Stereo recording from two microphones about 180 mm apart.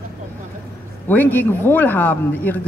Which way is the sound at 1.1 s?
10° left (ahead or behind).